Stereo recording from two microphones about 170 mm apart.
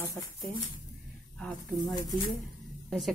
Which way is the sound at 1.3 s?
5° left (ahead or behind).